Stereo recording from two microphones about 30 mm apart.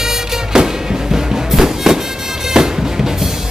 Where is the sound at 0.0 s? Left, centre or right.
Centre.